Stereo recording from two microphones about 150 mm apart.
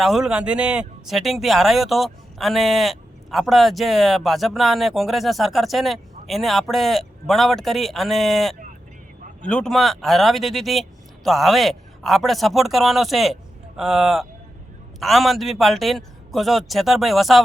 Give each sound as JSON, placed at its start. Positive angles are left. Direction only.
{"t": 0.0, "sound": "speech", "side_deg": 0}